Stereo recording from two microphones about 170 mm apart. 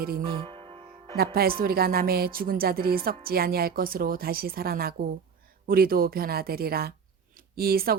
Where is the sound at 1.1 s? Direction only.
65° right (ahead or behind).